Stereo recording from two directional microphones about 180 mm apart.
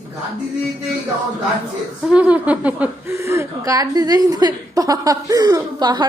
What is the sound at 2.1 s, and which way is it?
A woman's voice, 5° right (ahead or behind).